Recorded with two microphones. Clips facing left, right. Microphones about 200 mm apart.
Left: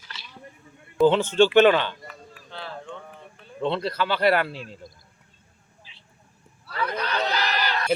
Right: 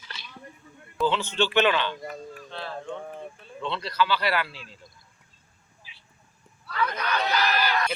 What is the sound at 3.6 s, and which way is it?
Speech, 50° left (ahead or behind).